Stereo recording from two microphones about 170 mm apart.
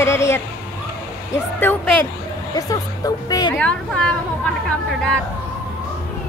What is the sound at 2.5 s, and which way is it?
Speech, 20° left (ahead or behind).